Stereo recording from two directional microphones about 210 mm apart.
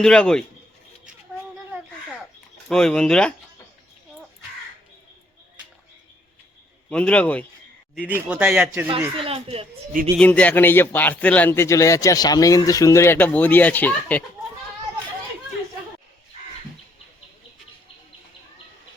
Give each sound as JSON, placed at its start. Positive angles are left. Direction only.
{"t": 0.0, "sound": "speech", "side_deg": 5}
{"t": 2.6, "sound": "speech", "side_deg": 5}
{"t": 6.9, "sound": "speech", "side_deg": 5}
{"t": 8.0, "sound": "speech", "side_deg": -5}
{"t": 9.1, "sound": "a child's voice", "side_deg": -25}
{"t": 10.2, "sound": "a man's voice", "side_deg": 5}